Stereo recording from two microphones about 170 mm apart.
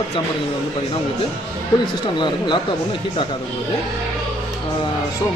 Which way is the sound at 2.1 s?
25° left (ahead or behind).